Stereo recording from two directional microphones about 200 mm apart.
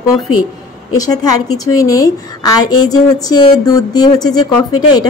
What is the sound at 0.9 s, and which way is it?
A woman's voice, 20° left (ahead or behind).